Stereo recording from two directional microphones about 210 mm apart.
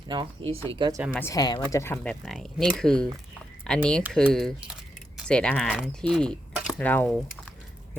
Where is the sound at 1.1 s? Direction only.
15° left (ahead or behind).